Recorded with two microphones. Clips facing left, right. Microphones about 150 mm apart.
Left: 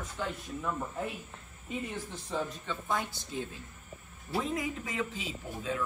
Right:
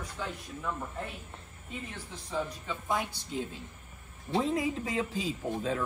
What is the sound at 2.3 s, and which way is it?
Speech, centre (ahead or behind).